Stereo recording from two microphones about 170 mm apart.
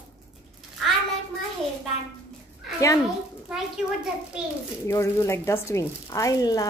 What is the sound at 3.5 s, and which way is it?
Speech, 5° right (ahead or behind).